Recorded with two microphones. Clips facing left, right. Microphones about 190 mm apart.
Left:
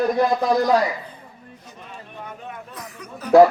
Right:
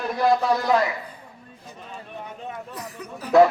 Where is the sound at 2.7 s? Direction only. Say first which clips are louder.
Right 2 dB; 30° right (ahead or behind).